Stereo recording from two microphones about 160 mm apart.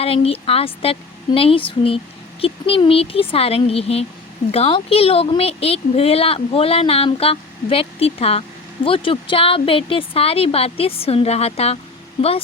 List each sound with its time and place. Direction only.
0.0 s speech: 35° left (ahead or behind)